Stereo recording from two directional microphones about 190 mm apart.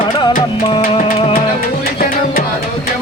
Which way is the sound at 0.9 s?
35° left (ahead or behind).